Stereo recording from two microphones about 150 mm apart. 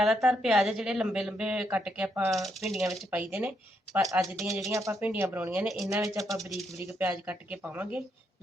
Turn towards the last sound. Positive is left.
turn(degrees=-10)  # may be behind; listen again after turning